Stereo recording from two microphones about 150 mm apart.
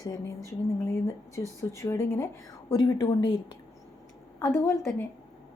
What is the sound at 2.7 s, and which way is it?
Speech, 25° left (ahead or behind).